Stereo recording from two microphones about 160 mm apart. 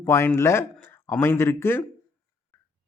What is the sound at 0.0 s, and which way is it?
Speech, 15° left (ahead or behind).